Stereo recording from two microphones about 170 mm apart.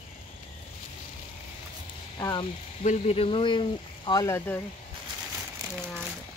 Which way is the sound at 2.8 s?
40° left (ahead or behind).